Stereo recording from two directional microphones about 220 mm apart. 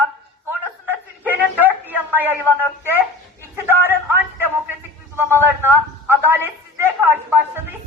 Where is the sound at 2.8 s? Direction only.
10° right (ahead or behind).